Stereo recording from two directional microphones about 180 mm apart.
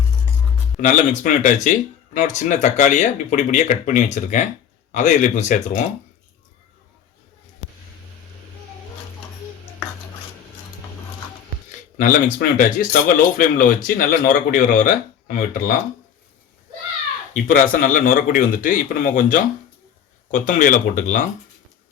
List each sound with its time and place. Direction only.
0.8 s speech: 45° left (ahead or behind)
11.9 s speech: 50° left (ahead or behind)
17.3 s speech: 45° left (ahead or behind)